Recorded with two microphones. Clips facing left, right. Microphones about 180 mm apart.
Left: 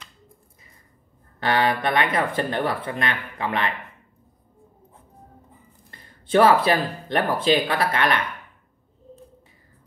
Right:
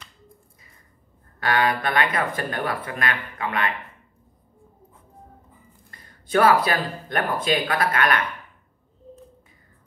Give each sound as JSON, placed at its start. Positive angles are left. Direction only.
{"t": 1.4, "sound": "speech", "side_deg": 25}
{"t": 5.9, "sound": "speech", "side_deg": 25}